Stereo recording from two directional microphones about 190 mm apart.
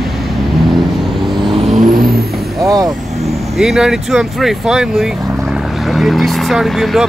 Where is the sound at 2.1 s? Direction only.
15° right (ahead or behind).